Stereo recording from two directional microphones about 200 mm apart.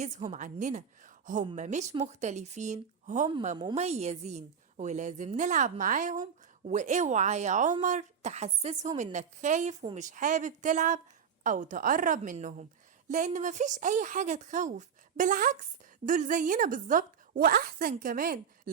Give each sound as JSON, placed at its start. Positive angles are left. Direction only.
{"t": 0.0, "sound": "a woman's voice", "side_deg": -35}